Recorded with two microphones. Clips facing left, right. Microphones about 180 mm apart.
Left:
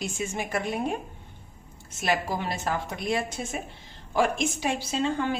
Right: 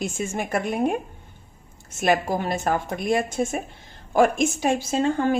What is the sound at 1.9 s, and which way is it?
A woman's voice, 50° right (ahead or behind).